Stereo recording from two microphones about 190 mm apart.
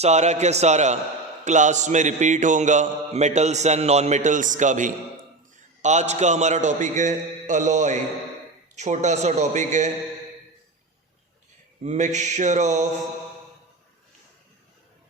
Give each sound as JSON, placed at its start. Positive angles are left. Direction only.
{"t": 0.0, "sound": "a man's voice", "side_deg": -35}
{"t": 11.8, "sound": "a man's voice", "side_deg": -40}